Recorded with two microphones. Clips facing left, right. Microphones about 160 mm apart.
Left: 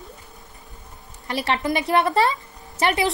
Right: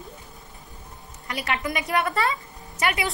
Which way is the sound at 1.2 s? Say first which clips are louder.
Left 5 dB; 30° left (ahead or behind).